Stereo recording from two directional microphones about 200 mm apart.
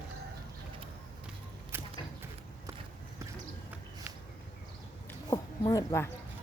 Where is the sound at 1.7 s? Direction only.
10° right (ahead or behind).